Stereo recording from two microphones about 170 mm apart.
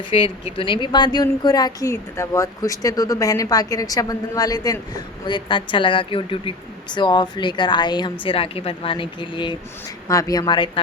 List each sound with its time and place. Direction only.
0.1 s a woman's voice: 35° left (ahead or behind)